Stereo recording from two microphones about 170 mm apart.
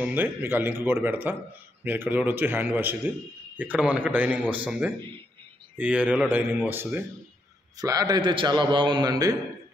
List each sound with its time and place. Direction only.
0.0 s a man's voice: 10° right (ahead or behind)